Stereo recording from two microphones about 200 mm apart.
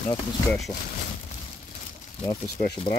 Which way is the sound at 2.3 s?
15° left (ahead or behind).